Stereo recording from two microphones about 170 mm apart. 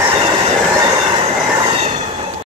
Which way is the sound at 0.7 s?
20° right (ahead or behind).